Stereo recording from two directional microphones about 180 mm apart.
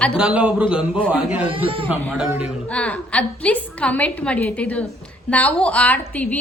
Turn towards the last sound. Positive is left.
turn(degrees=10)  # may be behind; listen again after turning